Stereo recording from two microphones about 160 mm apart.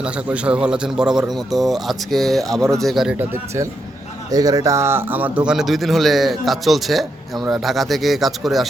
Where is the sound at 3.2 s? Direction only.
15° right (ahead or behind).